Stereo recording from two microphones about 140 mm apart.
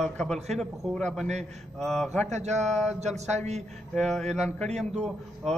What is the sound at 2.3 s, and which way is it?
A man's voice, 55° right (ahead or behind).